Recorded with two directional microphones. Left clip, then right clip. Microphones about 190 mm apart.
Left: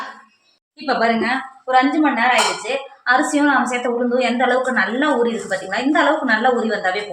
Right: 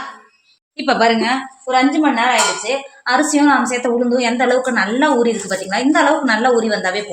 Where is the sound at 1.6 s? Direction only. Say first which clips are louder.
Right 1 dB; 45° right (ahead or behind).